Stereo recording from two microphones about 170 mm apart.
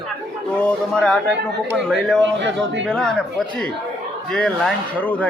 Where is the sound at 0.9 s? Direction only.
5° left (ahead or behind).